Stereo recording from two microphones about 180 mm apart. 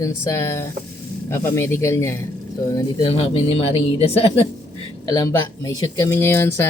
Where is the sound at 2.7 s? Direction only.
25° left (ahead or behind).